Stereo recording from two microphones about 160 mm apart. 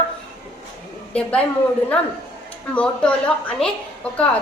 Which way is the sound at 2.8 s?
5° left (ahead or behind).